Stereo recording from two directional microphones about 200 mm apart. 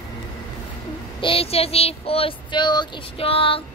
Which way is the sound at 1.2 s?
30° left (ahead or behind).